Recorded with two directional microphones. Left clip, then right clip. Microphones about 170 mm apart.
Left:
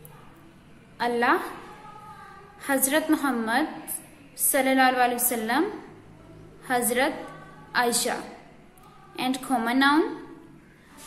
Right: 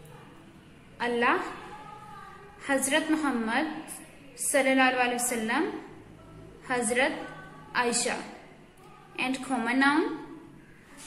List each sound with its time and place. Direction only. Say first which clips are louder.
0.9 s a woman's voice: left 3 dB; 40° left (ahead or behind)
2.6 s a woman's voice: left 2 dB; 45° left (ahead or behind)
6.7 s a woman's voice: left 2 dB; 40° left (ahead or behind)